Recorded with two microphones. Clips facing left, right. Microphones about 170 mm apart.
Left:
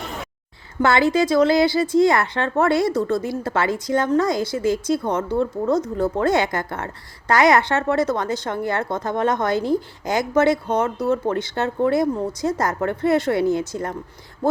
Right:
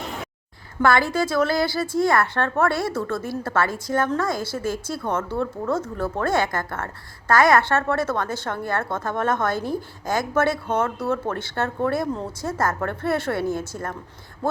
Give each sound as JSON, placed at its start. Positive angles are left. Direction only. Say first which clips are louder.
{"t": 0.8, "sound": "a woman's voice", "louder": "left 3 dB", "side_deg": 20}